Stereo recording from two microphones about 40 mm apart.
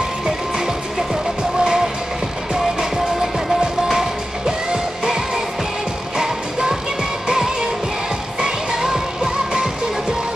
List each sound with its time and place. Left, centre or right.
1.6 s music: centre